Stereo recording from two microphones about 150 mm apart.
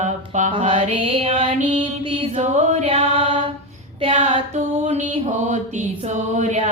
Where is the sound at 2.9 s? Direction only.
40° right (ahead or behind).